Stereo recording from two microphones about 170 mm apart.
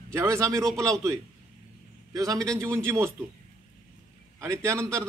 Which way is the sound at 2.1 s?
20° right (ahead or behind).